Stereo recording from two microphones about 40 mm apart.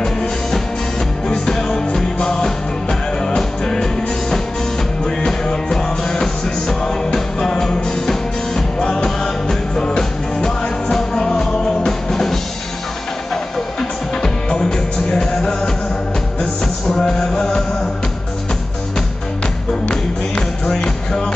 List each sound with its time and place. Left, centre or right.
0.0 s music: centre
16.8 s music: centre
19.9 s music: left